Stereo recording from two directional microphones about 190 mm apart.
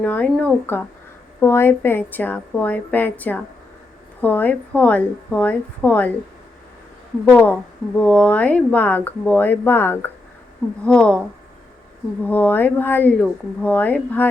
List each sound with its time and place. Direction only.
0.0 s speech: 10° left (ahead or behind)
7.3 s speech: 10° left (ahead or behind)
12.2 s speech: 10° left (ahead or behind)